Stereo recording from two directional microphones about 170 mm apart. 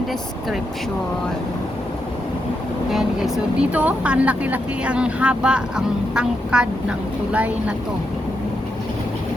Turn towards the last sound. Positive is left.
turn(degrees=-10)  # may be behind; listen again after turning